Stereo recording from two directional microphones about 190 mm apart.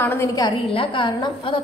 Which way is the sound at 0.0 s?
10° left (ahead or behind).